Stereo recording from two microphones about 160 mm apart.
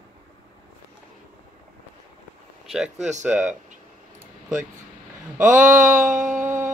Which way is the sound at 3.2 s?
10° right (ahead or behind).